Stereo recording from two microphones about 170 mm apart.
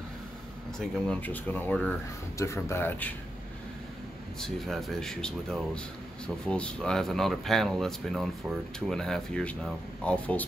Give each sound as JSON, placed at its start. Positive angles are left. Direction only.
{"t": 0.7, "sound": "speech", "side_deg": 5}
{"t": 4.4, "sound": "speech", "side_deg": 0}